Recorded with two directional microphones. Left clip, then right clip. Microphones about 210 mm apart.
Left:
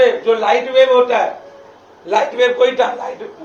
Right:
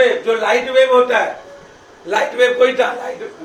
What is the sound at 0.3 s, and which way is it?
A man's voice, 15° right (ahead or behind).